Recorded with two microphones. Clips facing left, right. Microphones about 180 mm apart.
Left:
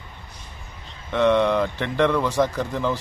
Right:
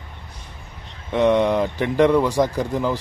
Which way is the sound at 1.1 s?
15° right (ahead or behind).